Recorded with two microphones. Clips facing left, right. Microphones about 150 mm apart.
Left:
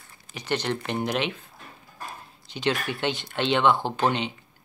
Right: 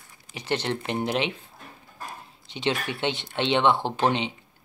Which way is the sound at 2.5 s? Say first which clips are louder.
Left 1 dB; 25° right (ahead or behind).